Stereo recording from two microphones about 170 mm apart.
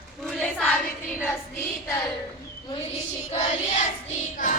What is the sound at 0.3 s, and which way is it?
Child singing, 5° left (ahead or behind).